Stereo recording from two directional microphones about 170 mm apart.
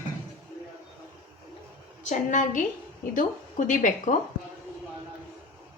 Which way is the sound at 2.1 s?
50° left (ahead or behind).